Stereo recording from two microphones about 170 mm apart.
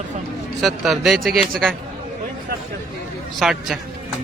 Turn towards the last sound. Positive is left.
turn(degrees=0)  # may be behind; listen again after turning